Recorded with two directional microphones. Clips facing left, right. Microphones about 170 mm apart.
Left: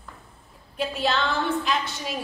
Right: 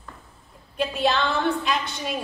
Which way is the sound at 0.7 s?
Centre (ahead or behind).